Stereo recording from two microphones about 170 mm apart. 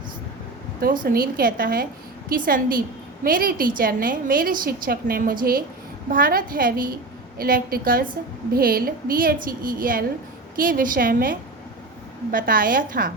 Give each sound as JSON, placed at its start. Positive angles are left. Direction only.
{"t": 1.0, "sound": "a woman's voice", "side_deg": -60}